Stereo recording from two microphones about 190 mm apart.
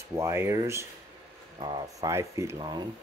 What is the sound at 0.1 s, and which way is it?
Speech, 15° right (ahead or behind).